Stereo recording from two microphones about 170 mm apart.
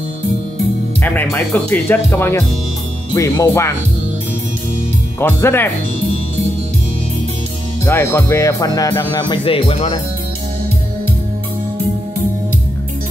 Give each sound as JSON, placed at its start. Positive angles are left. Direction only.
{"t": 1.0, "sound": "speech", "side_deg": 10}
{"t": 5.2, "sound": "speech", "side_deg": 15}
{"t": 7.8, "sound": "speech", "side_deg": 15}